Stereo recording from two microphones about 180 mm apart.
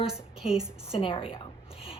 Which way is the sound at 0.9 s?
30° left (ahead or behind).